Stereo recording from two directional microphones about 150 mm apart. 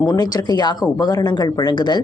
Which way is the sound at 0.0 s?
25° left (ahead or behind).